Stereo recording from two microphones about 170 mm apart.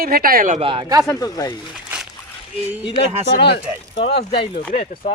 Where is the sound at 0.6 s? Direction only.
30° right (ahead or behind).